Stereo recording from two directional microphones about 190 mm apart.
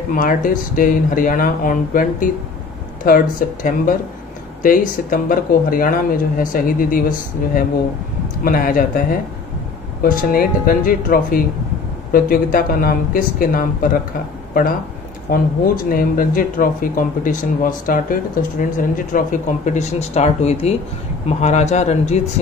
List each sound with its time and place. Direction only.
0.1 s speech: 45° left (ahead or behind)
10.0 s speech: 50° left (ahead or behind)